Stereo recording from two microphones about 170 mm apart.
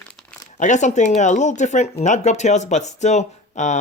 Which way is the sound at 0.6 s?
45° left (ahead or behind).